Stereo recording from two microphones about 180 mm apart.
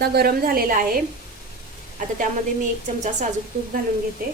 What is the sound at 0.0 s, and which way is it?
A woman's voice, 60° right (ahead or behind).